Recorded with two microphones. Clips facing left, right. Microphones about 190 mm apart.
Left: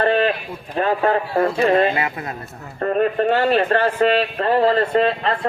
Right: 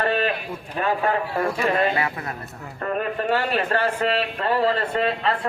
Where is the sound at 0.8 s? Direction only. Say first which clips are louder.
Left 4 dB; 35° left (ahead or behind).